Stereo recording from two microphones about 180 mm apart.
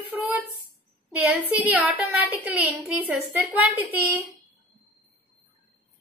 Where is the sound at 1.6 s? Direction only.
10° right (ahead or behind).